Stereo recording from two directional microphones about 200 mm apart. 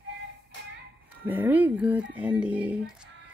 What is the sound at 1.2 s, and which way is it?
Speech, 10° right (ahead or behind).